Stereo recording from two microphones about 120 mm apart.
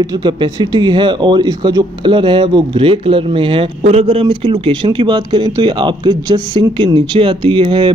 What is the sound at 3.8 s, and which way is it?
Speech, 60° right (ahead or behind).